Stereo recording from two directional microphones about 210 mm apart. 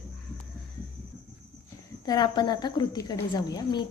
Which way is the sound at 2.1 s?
20° left (ahead or behind).